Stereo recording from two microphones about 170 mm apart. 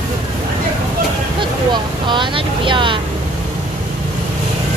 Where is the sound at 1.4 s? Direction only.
30° right (ahead or behind).